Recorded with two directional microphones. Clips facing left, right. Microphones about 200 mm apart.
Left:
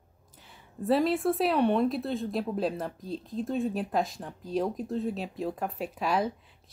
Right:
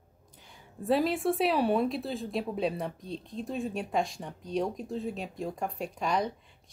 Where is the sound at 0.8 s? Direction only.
Centre (ahead or behind).